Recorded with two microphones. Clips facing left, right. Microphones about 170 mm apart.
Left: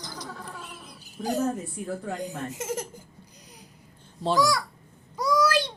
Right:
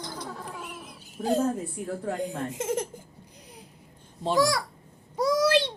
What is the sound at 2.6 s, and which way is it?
Speech, 25° right (ahead or behind).